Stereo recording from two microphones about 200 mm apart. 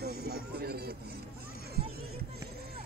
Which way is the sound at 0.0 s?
50° right (ahead or behind).